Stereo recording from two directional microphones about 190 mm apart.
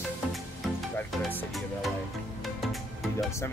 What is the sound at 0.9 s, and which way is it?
Speech, 5° left (ahead or behind).